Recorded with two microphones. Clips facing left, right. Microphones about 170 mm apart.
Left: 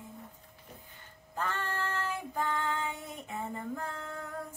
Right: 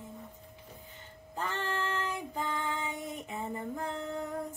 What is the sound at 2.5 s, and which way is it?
Female singing, 20° right (ahead or behind).